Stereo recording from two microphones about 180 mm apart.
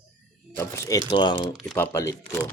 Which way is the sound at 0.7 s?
15° left (ahead or behind).